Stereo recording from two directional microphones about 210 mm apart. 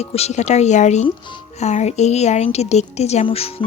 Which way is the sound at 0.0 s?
30° left (ahead or behind).